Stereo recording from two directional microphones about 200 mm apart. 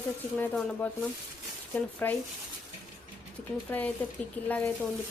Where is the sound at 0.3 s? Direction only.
10° left (ahead or behind).